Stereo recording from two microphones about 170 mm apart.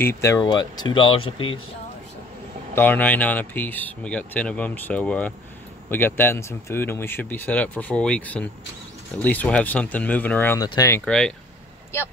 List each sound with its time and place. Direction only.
0.0 s speech: 15° left (ahead or behind)
2.7 s speech: 10° left (ahead or behind)
11.1 s speech: 5° left (ahead or behind)